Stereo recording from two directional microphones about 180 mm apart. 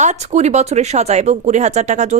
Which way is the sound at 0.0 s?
40° right (ahead or behind).